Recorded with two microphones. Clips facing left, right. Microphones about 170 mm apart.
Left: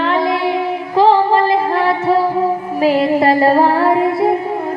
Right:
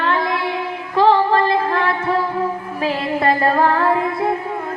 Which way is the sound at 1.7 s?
35° left (ahead or behind).